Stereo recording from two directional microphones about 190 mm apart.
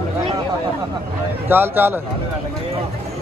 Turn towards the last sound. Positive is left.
turn(degrees=-10)  # may be behind; listen again after turning